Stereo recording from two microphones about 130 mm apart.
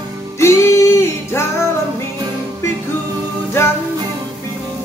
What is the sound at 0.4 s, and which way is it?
Music, 20° left (ahead or behind).